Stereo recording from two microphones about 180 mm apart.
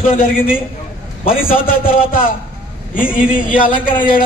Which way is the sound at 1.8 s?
30° left (ahead or behind).